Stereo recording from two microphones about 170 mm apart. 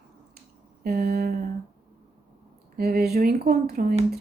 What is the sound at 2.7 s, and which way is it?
Speech, 65° right (ahead or behind).